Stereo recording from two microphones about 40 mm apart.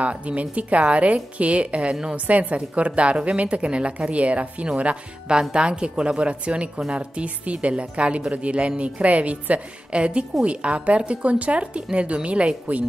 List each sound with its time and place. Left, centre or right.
0.0 s a woman's voice: right